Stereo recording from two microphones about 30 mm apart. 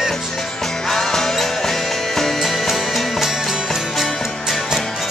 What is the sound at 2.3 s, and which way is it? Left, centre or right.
Music, centre.